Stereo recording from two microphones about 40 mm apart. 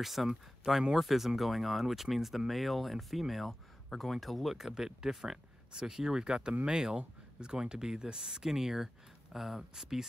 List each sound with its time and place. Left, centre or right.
0.0 s speech: centre